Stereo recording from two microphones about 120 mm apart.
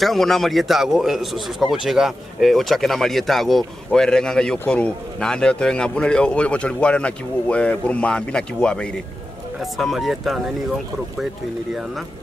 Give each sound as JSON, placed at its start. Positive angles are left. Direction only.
{"t": 0.0, "sound": "a man's voice", "side_deg": 0}